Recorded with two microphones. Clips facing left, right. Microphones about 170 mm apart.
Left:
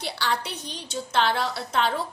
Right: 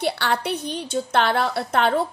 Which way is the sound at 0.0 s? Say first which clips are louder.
Right 6 dB; 55° right (ahead or behind).